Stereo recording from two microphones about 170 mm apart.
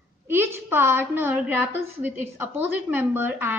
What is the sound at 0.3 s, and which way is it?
A woman's voice, 15° right (ahead or behind).